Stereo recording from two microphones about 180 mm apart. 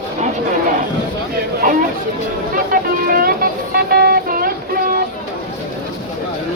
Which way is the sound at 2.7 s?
55° right (ahead or behind).